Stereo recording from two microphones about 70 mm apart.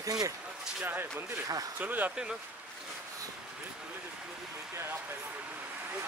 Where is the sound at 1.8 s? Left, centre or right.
Right.